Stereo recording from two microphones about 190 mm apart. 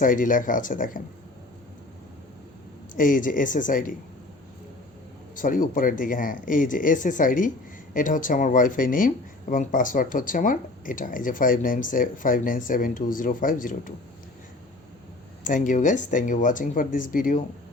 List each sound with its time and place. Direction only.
0.0 s speech: 45° left (ahead or behind)
2.9 s speech: 45° left (ahead or behind)
5.4 s speech: 45° left (ahead or behind)
15.4 s speech: 45° left (ahead or behind)